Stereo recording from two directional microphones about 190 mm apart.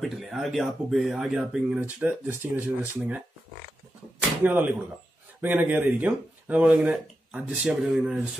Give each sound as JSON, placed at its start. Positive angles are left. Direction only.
{"t": 0.0, "sound": "speech", "side_deg": 0}
{"t": 4.4, "sound": "speech", "side_deg": -10}